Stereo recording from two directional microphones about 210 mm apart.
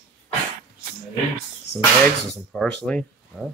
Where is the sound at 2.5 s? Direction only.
Centre (ahead or behind).